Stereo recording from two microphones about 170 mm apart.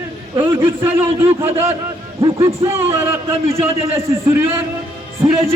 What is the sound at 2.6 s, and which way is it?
A man's voice, 15° right (ahead or behind).